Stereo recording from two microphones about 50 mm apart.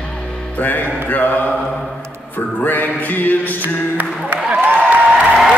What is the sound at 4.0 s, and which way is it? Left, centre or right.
Music, right.